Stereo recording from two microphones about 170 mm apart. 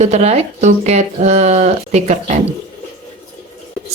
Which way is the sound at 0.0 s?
40° right (ahead or behind).